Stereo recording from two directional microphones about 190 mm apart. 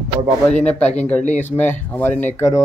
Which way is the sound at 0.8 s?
35° left (ahead or behind).